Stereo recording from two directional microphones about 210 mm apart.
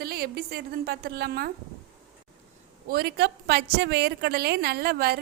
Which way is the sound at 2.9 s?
50° right (ahead or behind).